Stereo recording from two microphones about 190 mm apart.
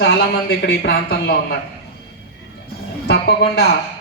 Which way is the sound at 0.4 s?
55° left (ahead or behind).